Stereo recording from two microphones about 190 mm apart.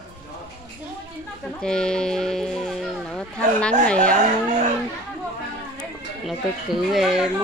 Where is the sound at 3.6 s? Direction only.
5° left (ahead or behind).